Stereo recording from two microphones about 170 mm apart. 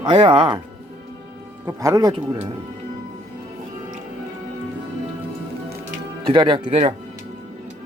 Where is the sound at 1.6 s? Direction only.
20° right (ahead or behind).